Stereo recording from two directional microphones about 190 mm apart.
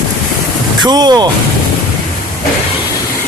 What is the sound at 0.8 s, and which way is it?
Speech, 20° right (ahead or behind).